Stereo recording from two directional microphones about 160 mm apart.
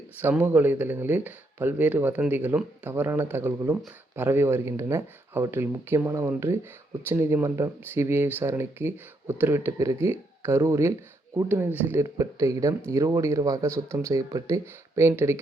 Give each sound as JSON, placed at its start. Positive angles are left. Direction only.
{"t": 0.2, "sound": "speech", "side_deg": -15}